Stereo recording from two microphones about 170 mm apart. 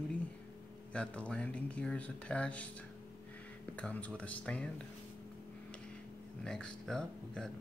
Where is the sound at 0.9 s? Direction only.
5° left (ahead or behind).